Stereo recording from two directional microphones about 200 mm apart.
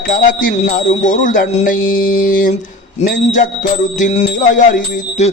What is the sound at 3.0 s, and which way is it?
Speech, 40° left (ahead or behind).